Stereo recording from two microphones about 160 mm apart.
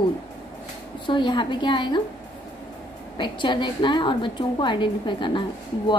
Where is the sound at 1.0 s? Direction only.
30° left (ahead or behind).